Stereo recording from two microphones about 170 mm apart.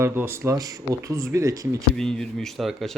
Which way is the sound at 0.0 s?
15° right (ahead or behind).